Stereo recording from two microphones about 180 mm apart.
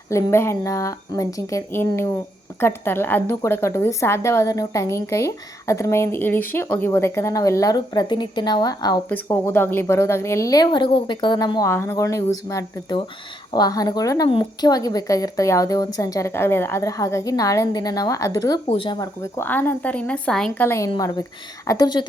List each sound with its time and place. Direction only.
0.1 s a woman's voice: 15° left (ahead or behind)
9.0 s a woman's voice: 10° left (ahead or behind)
20.7 s a woman's voice: 15° left (ahead or behind)